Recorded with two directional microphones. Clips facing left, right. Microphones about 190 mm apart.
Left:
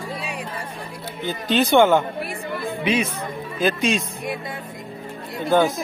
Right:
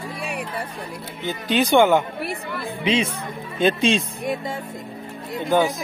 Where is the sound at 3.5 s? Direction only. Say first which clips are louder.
Right 2 dB; 30° right (ahead or behind).